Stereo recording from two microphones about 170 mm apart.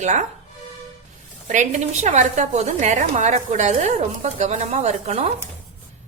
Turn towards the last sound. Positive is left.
turn(degrees=-40)  # may be behind; listen again after turning